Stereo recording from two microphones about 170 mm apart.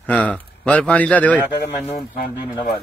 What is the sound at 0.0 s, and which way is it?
Speech, 5° left (ahead or behind).